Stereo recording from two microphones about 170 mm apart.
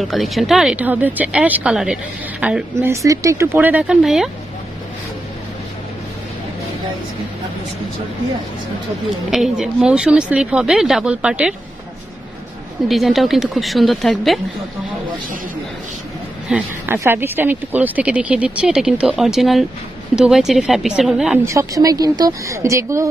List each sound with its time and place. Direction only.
0.0 s speech: centre (ahead or behind)
9.3 s speech: 5° right (ahead or behind)
12.8 s speech: centre (ahead or behind)
16.4 s speech: 10° right (ahead or behind)
21.5 s speech: 20° right (ahead or behind)